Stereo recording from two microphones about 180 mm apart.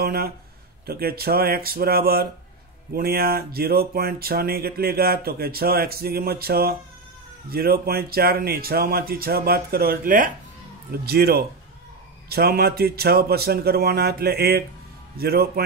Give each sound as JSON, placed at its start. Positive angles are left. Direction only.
{"t": 0.0, "sound": "speech", "side_deg": -60}
{"t": 10.9, "sound": "speech", "side_deg": -60}